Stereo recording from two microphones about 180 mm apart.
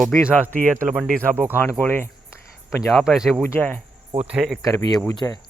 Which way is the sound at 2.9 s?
Centre (ahead or behind).